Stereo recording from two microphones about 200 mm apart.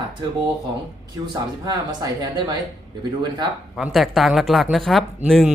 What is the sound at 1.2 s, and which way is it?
Speech, 20° right (ahead or behind).